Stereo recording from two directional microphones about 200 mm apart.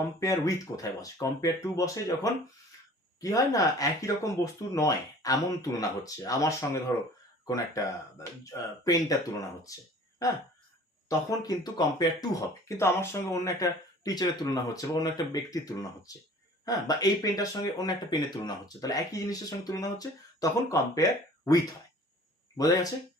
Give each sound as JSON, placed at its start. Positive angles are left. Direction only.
{"t": 0.2, "sound": "speech", "side_deg": 15}
{"t": 11.3, "sound": "speech", "side_deg": 20}